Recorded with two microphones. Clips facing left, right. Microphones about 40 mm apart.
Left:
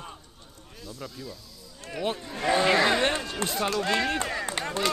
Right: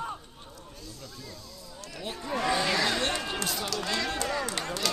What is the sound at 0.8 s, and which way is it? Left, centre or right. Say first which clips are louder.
Speech: left 8 dB; centre.